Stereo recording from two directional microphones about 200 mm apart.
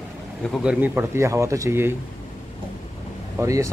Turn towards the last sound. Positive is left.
turn(degrees=-15)  # may be behind; listen again after turning